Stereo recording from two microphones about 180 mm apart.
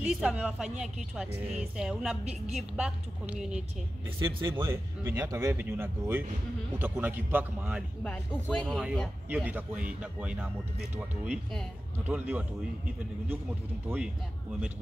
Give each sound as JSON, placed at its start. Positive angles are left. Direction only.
{"t": 0.0, "sound": "a woman's voice", "side_deg": 0}
{"t": 4.2, "sound": "speech", "side_deg": -25}
{"t": 4.5, "sound": "speech", "side_deg": -15}
{"t": 8.5, "sound": "a woman's voice", "side_deg": 5}